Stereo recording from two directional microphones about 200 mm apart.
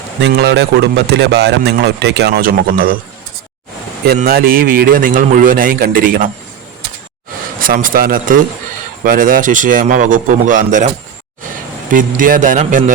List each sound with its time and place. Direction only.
0.2 s speech: 60° right (ahead or behind)
4.2 s a man's voice: 45° right (ahead or behind)
7.6 s a man's voice: 45° right (ahead or behind)